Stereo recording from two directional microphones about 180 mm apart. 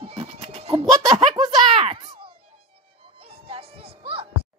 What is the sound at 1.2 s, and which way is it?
A child's voice, 30° right (ahead or behind).